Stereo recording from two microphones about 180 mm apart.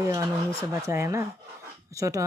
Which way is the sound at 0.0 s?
15° right (ahead or behind).